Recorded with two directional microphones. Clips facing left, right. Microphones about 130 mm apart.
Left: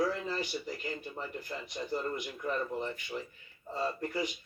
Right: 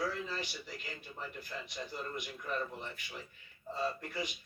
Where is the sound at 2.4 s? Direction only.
40° left (ahead or behind).